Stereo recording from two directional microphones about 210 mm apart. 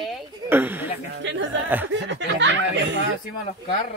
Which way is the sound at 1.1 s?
60° right (ahead or behind).